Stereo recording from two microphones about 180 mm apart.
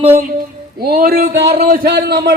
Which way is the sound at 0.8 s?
55° right (ahead or behind).